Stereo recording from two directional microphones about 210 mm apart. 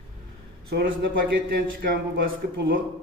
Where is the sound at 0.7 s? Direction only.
50° right (ahead or behind).